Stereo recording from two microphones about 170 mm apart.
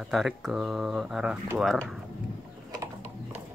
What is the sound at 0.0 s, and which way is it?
Speech, centre (ahead or behind).